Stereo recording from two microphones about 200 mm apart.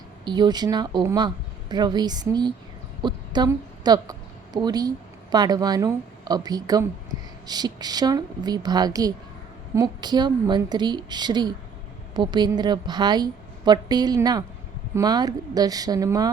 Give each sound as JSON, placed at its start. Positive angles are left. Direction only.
{"t": 0.3, "sound": "a woman's voice", "side_deg": -20}